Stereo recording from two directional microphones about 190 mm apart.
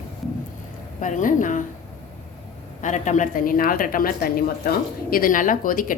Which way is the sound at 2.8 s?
40° left (ahead or behind).